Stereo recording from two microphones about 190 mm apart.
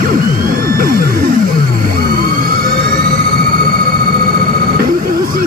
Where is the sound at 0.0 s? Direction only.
50° right (ahead or behind).